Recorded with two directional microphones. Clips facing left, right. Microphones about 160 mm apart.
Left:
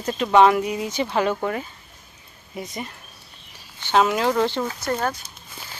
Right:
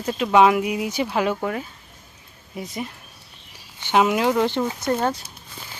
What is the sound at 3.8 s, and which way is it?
Speech, 15° right (ahead or behind).